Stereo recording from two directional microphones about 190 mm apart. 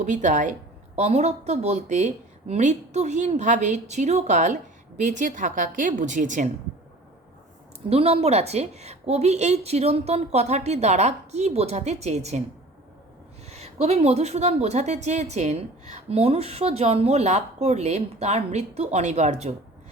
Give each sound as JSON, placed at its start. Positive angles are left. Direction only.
{"t": 0.0, "sound": "a woman's voice", "side_deg": -40}
{"t": 7.9, "sound": "a woman's voice", "side_deg": -30}
{"t": 13.5, "sound": "a woman's voice", "side_deg": -35}